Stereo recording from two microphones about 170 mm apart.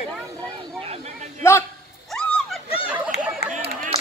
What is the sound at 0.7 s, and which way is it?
Vehicle, 35° right (ahead or behind).